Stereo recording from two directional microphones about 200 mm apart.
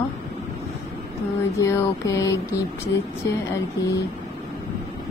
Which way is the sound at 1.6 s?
15° left (ahead or behind).